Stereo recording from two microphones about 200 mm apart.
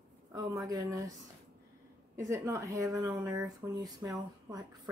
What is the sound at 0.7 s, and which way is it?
Speech, 15° right (ahead or behind).